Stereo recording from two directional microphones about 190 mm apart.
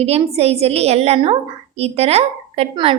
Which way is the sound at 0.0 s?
35° right (ahead or behind).